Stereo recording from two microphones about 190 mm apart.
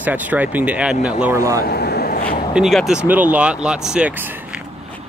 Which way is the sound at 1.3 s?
15° right (ahead or behind).